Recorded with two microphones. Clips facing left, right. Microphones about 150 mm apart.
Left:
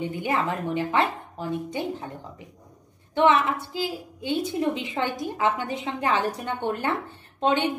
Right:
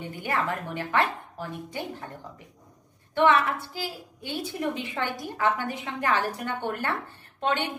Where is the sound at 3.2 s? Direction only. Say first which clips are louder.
Left 1 dB; 20° left (ahead or behind).